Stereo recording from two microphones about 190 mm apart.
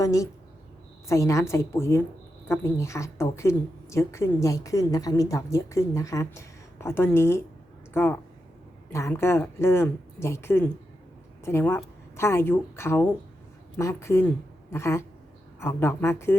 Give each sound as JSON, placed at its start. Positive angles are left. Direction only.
{"t": 0.0, "sound": "a woman's voice", "side_deg": 15}